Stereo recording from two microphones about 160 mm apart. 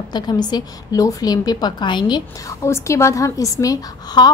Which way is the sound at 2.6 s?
15° left (ahead or behind).